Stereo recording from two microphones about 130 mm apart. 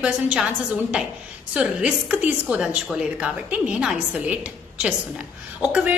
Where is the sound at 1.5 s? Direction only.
10° right (ahead or behind).